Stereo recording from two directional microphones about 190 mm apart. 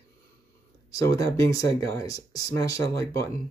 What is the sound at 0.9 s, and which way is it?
Speech, 15° left (ahead or behind).